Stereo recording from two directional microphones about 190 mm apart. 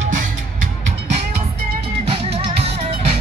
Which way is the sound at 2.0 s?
30° right (ahead or behind).